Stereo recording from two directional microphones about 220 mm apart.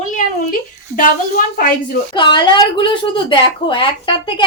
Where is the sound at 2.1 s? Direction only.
20° left (ahead or behind).